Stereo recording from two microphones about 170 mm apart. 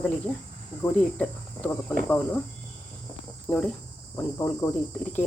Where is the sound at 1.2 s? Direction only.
10° left (ahead or behind).